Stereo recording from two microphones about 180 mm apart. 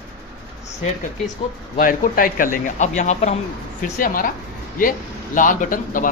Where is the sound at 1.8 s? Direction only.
50° left (ahead or behind).